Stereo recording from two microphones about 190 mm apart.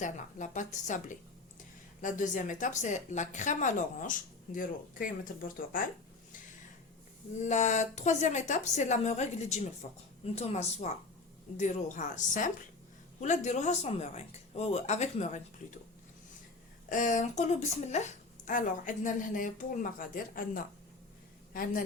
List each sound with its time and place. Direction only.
0.0 s a woman's voice: 40° left (ahead or behind)
7.4 s a woman's voice: 40° left (ahead or behind)
16.9 s a woman's voice: 40° left (ahead or behind)